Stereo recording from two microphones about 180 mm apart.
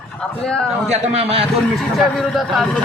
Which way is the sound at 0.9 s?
35° right (ahead or behind).